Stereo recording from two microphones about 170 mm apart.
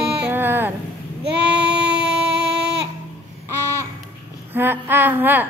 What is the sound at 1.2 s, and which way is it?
Child singing, 80° right.